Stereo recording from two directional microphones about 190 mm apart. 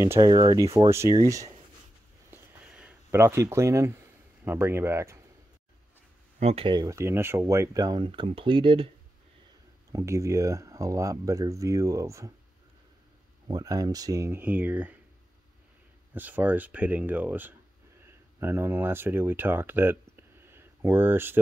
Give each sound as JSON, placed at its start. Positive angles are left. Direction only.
{"t": 0.0, "sound": "speech", "side_deg": -15}
{"t": 2.3, "sound": "a sound", "side_deg": -5}
{"t": 4.5, "sound": "speech", "side_deg": -10}
{"t": 6.4, "sound": "speech", "side_deg": -30}
{"t": 9.9, "sound": "speech", "side_deg": -15}
{"t": 13.5, "sound": "speech", "side_deg": -20}
{"t": 16.1, "sound": "speech", "side_deg": -10}